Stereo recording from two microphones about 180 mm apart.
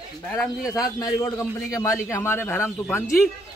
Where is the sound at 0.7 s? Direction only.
20° left (ahead or behind).